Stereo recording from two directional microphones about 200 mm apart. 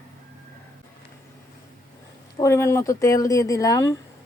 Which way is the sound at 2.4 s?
15° left (ahead or behind).